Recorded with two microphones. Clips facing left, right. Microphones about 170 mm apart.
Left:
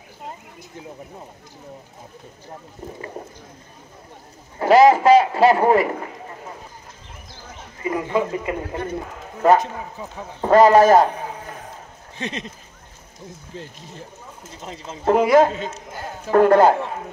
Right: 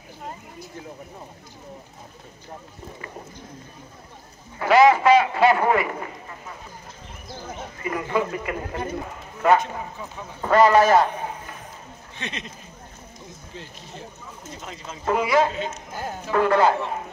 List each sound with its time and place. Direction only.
4.6 s sheep: 40° left (ahead or behind)
7.8 s speech: 20° left (ahead or behind)
9.4 s a man's voice: 35° left (ahead or behind)
12.2 s speech: 35° left (ahead or behind)
14.6 s speech: 30° left (ahead or behind)
15.2 s a man's voice: 45° left (ahead or behind)